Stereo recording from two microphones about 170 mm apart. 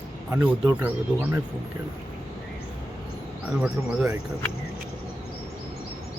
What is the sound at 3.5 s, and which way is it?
Speech, 5° right (ahead or behind).